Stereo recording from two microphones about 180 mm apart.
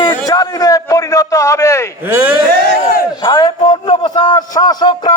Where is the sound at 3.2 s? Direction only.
25° left (ahead or behind).